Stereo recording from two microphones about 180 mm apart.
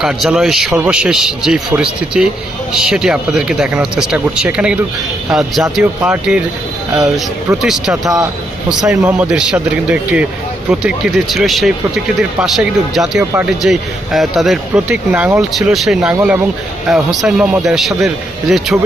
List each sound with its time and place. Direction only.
0.0 s a man's voice: 5° right (ahead or behind)
7.6 s a man's voice: centre (ahead or behind)